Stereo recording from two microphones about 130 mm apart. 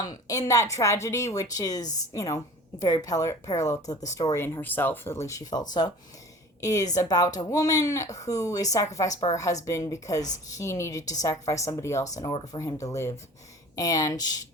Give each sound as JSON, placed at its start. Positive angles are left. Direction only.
{"t": 0.0, "sound": "a woman's voice", "side_deg": 30}